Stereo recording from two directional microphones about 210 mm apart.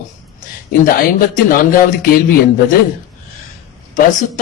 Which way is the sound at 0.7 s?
40° left (ahead or behind).